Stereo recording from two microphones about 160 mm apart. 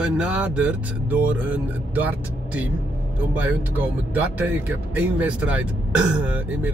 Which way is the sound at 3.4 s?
10° right (ahead or behind).